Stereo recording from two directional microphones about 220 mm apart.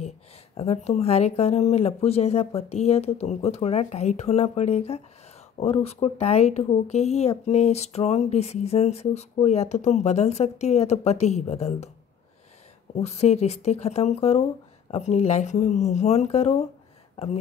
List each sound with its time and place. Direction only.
0.6 s speech: 30° left (ahead or behind)
12.9 s speech: 30° left (ahead or behind)